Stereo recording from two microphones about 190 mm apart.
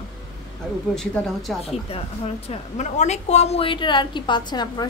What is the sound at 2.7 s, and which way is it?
A woman's voice, 35° left (ahead or behind).